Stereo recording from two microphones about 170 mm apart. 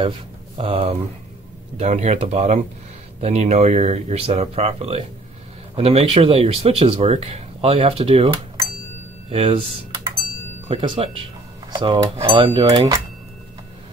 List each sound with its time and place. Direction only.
0.6 s speech: 35° right (ahead or behind)
9.3 s speech: 35° right (ahead or behind)
10.7 s speech: 30° right (ahead or behind)